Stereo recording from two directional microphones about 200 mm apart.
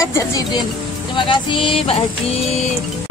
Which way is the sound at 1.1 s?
25° left (ahead or behind).